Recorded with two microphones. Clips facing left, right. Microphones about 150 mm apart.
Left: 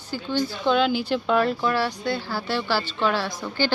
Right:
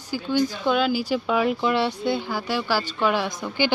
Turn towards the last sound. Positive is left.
turn(degrees=-15)  # may be behind; listen again after turning